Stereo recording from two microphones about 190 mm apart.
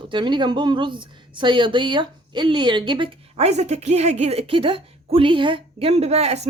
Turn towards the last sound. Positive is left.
turn(degrees=-35)  # may be behind; listen again after turning